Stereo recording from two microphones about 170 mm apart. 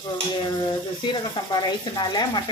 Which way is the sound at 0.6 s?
30° left (ahead or behind).